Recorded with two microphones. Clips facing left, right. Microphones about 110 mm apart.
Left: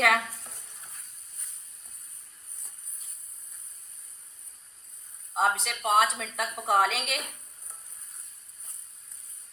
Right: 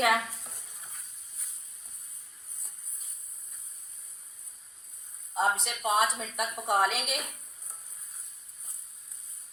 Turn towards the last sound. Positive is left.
turn(degrees=0)  # may be behind; listen again after turning